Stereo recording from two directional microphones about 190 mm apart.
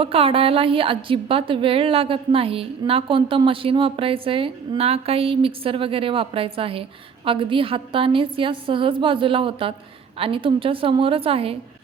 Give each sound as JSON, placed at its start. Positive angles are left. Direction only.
{"t": 0.0, "sound": "a woman's voice", "side_deg": -30}